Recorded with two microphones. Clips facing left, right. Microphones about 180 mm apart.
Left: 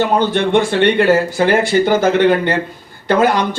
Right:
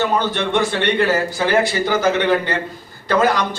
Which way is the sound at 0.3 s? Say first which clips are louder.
Left 5 dB; 55° left (ahead or behind).